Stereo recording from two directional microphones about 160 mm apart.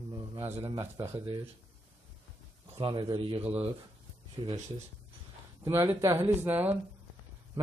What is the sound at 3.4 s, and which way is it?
Speech, 10° right (ahead or behind).